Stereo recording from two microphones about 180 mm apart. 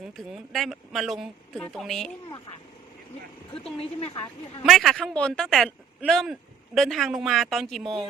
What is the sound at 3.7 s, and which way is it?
Speech, 35° left (ahead or behind).